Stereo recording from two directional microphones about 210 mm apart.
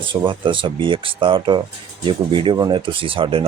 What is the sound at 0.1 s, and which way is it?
Speech, 25° right (ahead or behind).